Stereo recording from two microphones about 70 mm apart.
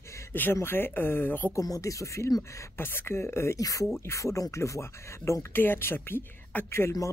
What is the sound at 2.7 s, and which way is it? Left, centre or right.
Speech, left.